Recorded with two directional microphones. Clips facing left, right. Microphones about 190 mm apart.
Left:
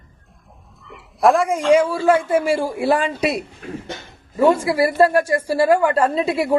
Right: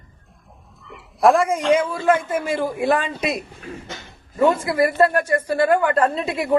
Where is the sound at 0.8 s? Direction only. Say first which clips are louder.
Even; centre (ahead or behind).